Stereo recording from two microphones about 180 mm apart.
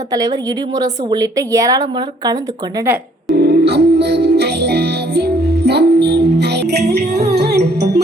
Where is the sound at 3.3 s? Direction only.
60° right (ahead or behind).